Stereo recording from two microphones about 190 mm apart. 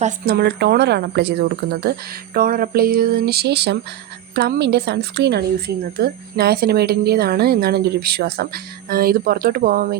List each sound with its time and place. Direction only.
0.3 s a woman's voice: 60° right (ahead or behind)